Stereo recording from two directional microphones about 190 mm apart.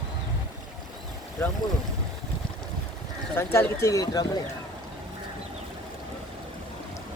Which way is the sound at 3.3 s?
15° left (ahead or behind).